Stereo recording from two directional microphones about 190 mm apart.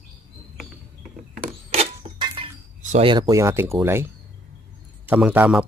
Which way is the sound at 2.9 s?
30° right (ahead or behind).